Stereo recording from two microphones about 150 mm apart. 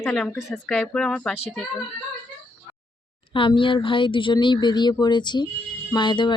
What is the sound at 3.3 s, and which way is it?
A woman's voice, 35° left (ahead or behind).